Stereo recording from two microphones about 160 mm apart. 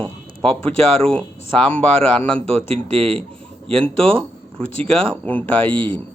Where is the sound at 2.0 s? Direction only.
35° right (ahead or behind).